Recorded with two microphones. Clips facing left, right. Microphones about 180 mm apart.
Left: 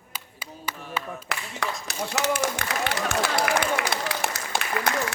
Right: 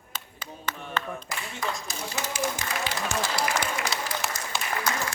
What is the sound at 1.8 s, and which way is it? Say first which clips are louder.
Speech: left 7 dB; 75° left (ahead or behind).